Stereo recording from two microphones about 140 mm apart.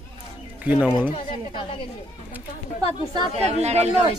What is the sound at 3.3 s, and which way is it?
Speech, 50° right (ahead or behind).